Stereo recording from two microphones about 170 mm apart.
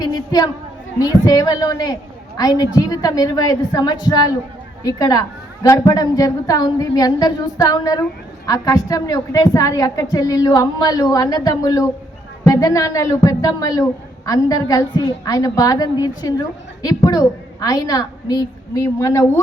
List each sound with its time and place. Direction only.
0.0 s a woman's voice: 20° left (ahead or behind)